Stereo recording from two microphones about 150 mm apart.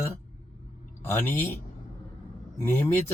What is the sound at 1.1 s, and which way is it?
Speech, 15° left (ahead or behind).